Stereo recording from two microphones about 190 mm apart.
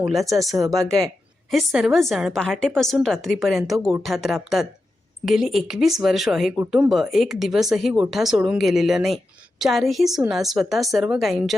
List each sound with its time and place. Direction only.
0.0 s a woman's voice: centre (ahead or behind)